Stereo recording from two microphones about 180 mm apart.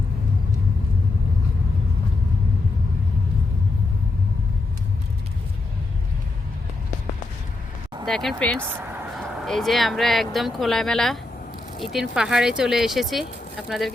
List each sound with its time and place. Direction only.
8.0 s speech: centre (ahead or behind)
8.6 s speech: 10° right (ahead or behind)
9.0 s speech: centre (ahead or behind)